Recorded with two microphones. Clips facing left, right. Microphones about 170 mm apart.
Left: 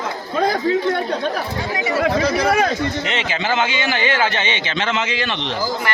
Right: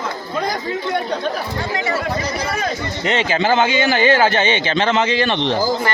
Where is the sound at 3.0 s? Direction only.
40° right (ahead or behind).